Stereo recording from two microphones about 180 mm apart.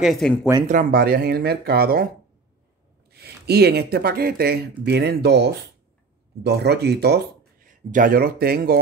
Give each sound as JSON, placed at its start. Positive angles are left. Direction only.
{"t": 0.0, "sound": "speech", "side_deg": 0}
{"t": 0.7, "sound": "speech", "side_deg": -50}
{"t": 3.1, "sound": "speech", "side_deg": -60}
{"t": 7.6, "sound": "speech", "side_deg": -50}